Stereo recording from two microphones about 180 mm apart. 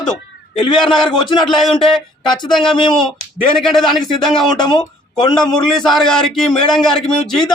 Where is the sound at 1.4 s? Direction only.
Centre (ahead or behind).